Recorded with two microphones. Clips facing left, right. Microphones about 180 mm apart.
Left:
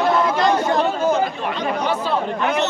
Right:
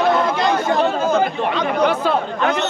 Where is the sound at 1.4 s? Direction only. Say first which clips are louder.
Right 5 dB; 60° right (ahead or behind).